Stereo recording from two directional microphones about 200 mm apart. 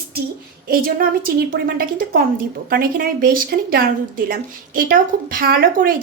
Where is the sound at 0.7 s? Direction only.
45° right (ahead or behind).